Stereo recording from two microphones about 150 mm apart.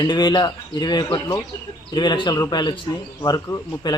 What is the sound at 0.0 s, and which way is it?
A man's voice, 30° left (ahead or behind).